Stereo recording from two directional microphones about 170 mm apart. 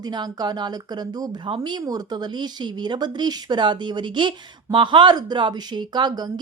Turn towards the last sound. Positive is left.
turn(degrees=-25)  # may be behind; listen again after turning